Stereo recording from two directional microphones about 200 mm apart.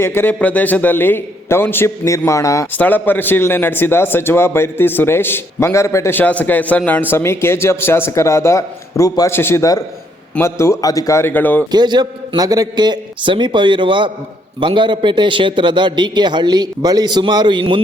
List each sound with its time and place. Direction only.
0.0 s a man's voice: 10° left (ahead or behind)
11.7 s a man's voice: 20° right (ahead or behind)